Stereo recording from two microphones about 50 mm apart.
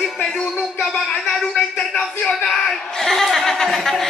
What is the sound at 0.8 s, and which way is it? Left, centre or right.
Speech, centre.